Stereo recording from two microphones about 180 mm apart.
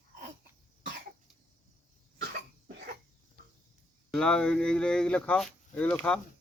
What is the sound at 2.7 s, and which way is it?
Cough, 65° right (ahead or behind).